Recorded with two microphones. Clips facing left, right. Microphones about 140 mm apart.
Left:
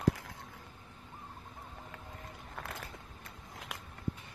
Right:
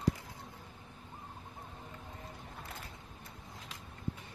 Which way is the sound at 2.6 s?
90° left.